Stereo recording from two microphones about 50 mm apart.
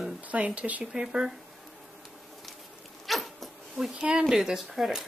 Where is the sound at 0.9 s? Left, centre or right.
Centre.